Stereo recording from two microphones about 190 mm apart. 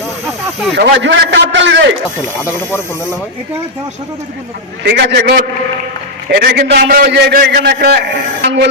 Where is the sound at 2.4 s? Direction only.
15° left (ahead or behind).